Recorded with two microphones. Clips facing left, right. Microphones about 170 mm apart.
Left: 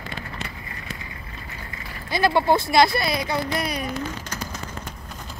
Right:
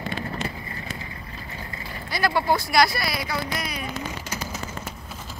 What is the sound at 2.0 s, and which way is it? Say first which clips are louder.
Speech: left 3 dB; 20° left (ahead or behind).